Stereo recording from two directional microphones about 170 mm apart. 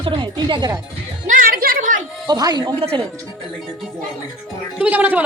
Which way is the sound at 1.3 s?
55° right (ahead or behind).